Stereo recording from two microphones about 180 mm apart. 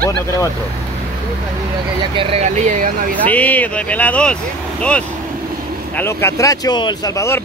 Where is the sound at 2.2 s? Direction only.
35° right (ahead or behind).